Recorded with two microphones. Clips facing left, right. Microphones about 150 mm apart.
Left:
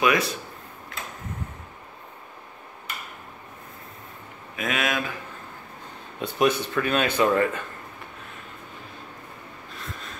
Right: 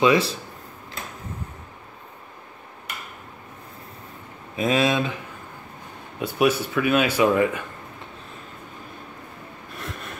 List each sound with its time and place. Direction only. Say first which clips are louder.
0.0 s speech: right 4 dB; 30° right (ahead or behind)
4.6 s speech: right 6 dB; 30° right (ahead or behind)
6.1 s speech: right 2 dB; 5° right (ahead or behind)
9.8 s a sound: right 4 dB; 65° right (ahead or behind)